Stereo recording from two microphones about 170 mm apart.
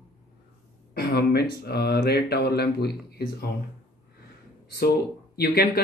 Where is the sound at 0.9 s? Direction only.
70° left (ahead or behind).